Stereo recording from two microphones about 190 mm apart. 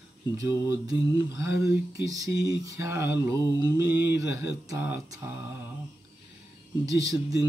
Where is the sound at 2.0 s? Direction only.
20° right (ahead or behind).